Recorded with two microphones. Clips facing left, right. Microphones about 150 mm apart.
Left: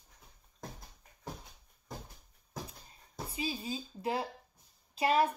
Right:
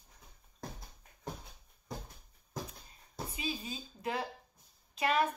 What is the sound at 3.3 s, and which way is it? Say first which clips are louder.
Speech: left 4 dB; 30° left (ahead or behind).